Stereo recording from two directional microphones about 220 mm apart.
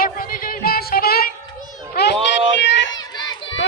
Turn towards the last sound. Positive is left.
turn(degrees=20)  # may be behind; listen again after turning